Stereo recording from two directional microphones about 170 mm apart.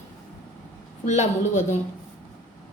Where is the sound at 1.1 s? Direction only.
45° left (ahead or behind).